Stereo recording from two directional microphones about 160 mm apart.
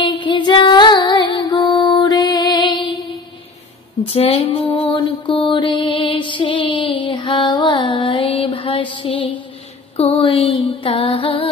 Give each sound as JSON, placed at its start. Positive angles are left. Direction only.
{"t": 0.0, "sound": "female singing", "side_deg": 30}
{"t": 4.0, "sound": "mantra", "side_deg": 35}
{"t": 8.9, "sound": "music", "side_deg": 30}